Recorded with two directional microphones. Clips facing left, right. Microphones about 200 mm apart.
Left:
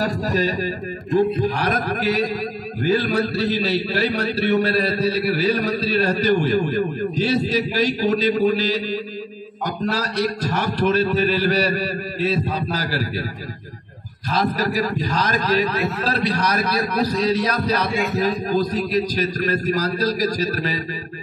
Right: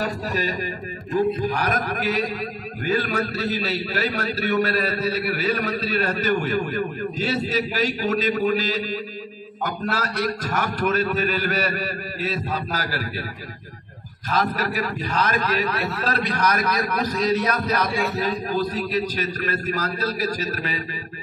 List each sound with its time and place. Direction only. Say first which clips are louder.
0.0 s a man's voice: left 4 dB; 35° left (ahead or behind)
14.3 s a man's voice: left 3 dB; 35° left (ahead or behind)